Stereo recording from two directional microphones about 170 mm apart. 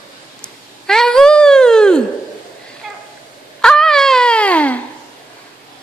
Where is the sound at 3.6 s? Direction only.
5° left (ahead or behind).